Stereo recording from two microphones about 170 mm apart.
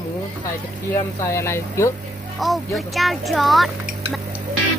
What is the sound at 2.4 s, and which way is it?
Speech, centre (ahead or behind).